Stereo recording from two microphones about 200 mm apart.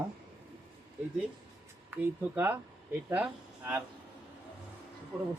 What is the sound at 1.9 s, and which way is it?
Speech, 10° right (ahead or behind).